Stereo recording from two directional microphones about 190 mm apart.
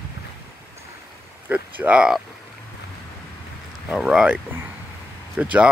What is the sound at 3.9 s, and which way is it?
Speech, centre (ahead or behind).